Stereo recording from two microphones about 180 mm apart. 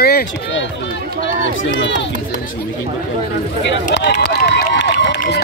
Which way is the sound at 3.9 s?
75° left (ahead or behind).